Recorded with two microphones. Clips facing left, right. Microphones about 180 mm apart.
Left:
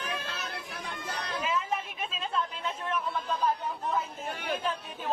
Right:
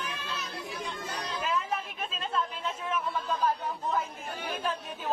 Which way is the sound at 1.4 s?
Centre (ahead or behind).